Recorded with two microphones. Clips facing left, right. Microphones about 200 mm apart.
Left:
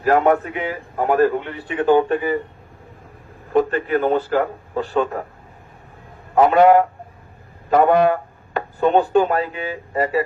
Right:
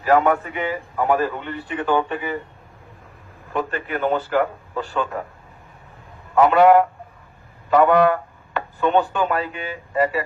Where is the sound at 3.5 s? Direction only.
35° left (ahead or behind).